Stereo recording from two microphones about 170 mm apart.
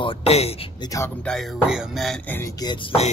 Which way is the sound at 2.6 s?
30° left (ahead or behind).